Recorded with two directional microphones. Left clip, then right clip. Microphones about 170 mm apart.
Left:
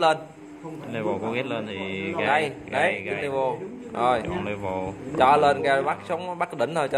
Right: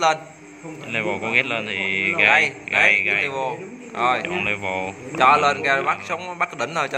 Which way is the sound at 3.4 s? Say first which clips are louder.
Even; 25° left (ahead or behind).